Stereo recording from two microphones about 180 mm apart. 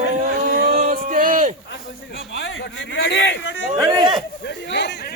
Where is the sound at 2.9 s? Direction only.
75° left (ahead or behind).